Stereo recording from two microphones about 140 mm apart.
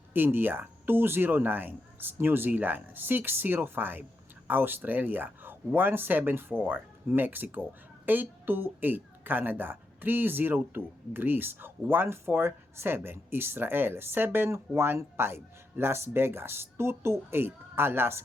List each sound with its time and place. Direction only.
0.1 s a woman's voice: 15° right (ahead or behind)